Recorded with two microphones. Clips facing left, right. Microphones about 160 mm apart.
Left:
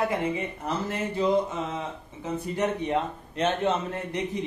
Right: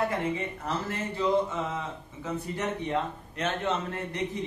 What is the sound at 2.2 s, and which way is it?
A man's voice, 20° left (ahead or behind).